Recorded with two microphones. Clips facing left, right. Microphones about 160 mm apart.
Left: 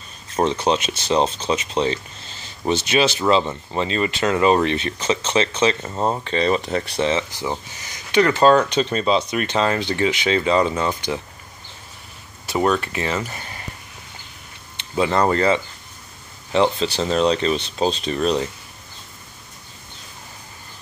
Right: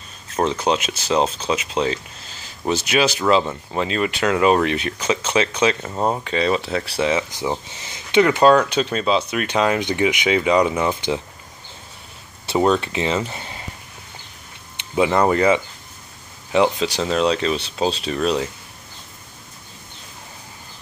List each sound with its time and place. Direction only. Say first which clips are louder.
0.5 s speech: even; 5° right (ahead or behind); by 11.2 s 20° right (ahead or behind)
12.4 s speech: right 2 dB; 25° right (ahead or behind)
14.8 s speech: right 2 dB; 10° right (ahead or behind)